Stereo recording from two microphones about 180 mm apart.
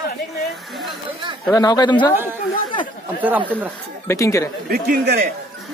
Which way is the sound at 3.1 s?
10° right (ahead or behind).